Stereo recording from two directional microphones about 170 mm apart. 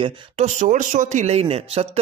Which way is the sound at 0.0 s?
40° right (ahead or behind).